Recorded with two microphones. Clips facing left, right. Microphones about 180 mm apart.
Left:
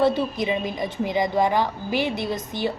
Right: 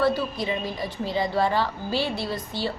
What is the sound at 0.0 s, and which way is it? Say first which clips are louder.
A woman's voice: left 3 dB; 20° left (ahead or behind).